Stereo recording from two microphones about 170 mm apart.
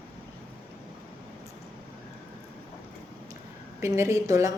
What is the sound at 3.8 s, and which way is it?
Speech, 15° right (ahead or behind).